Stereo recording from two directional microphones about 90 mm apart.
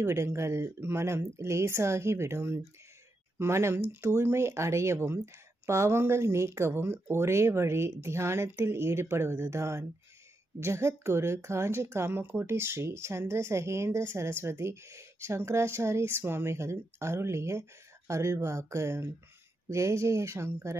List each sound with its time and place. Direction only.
0.0 s speech: 30° right (ahead or behind)